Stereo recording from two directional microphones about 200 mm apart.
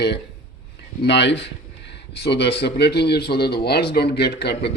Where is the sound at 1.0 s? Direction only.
60° left (ahead or behind).